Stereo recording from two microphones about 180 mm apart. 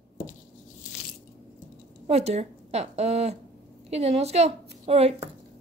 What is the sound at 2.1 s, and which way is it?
A woman's voice, 35° right (ahead or behind).